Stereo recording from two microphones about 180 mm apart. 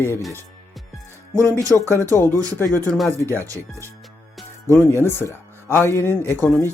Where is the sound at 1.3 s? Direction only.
15° right (ahead or behind).